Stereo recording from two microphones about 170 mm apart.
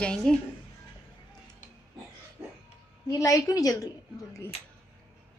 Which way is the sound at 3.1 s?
20° left (ahead or behind).